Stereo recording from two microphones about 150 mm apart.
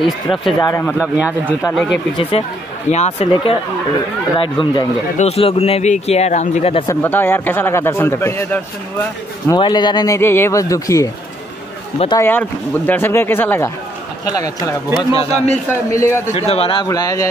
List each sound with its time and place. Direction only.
0.0 s speech: centre (ahead or behind)
0.6 s speech: 25° left (ahead or behind)
0.9 s speech: 10° right (ahead or behind)
2.4 s speech: 40° left (ahead or behind)
5.1 s speech: 45° left (ahead or behind)
6.9 s a man's voice: 15° left (ahead or behind)
9.5 s speech: 30° left (ahead or behind)
12.2 s a man's voice: 15° left (ahead or behind)
15.1 s speech: 45° left (ahead or behind)
15.7 s speech: 20° left (ahead or behind)
16.3 s speech: 40° left (ahead or behind)
16.8 s speech: 25° left (ahead or behind)